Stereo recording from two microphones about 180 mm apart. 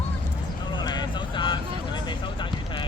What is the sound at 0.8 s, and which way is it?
Vehicle, 25° left (ahead or behind).